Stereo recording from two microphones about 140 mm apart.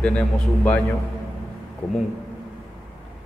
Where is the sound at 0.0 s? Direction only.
10° left (ahead or behind).